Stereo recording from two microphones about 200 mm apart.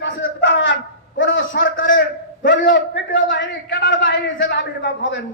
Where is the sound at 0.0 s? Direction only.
65° left (ahead or behind).